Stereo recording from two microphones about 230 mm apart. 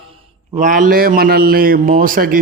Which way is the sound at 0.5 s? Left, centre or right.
Right.